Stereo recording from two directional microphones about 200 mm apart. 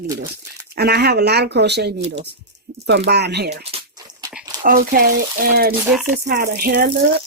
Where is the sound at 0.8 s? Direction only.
55° right (ahead or behind).